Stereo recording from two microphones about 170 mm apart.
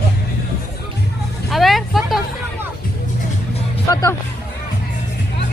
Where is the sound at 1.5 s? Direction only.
Centre (ahead or behind).